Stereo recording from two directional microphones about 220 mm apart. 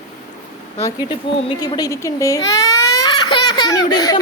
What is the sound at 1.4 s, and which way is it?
A woman's voice, 20° left (ahead or behind).